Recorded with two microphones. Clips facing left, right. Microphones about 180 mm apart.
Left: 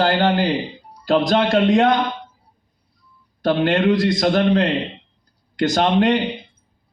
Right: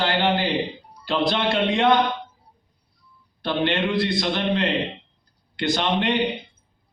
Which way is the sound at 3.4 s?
45° left (ahead or behind).